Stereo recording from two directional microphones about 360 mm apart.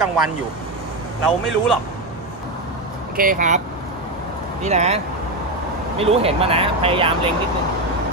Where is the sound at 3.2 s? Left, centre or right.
Right.